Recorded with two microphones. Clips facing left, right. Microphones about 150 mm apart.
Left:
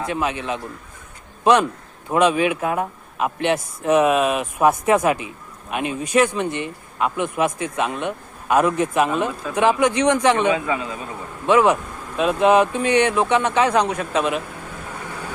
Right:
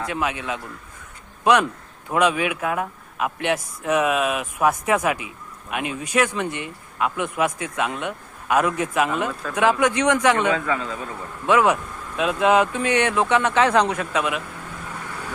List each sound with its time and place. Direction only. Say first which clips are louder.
0.0 s speech: left 2 dB; 25° left (ahead or behind)
2.0 s a man's voice: left 3 dB; 25° left (ahead or behind)